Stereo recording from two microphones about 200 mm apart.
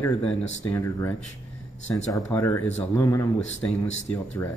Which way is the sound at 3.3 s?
70° left (ahead or behind).